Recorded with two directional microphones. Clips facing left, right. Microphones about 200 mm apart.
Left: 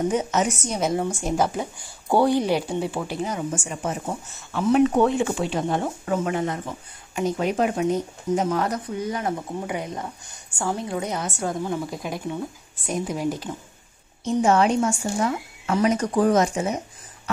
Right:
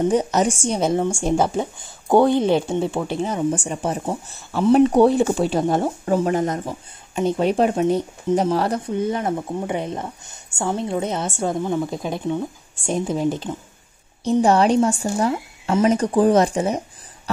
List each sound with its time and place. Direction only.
0.1 s speech: 35° right (ahead or behind)
7.2 s speech: 30° right (ahead or behind)